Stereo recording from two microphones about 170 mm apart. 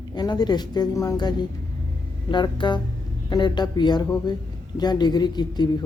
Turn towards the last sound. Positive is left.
turn(degrees=25)  # may be behind; listen again after turning